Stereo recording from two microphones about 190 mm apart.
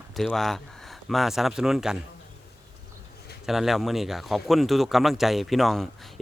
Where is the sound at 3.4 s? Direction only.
Centre (ahead or behind).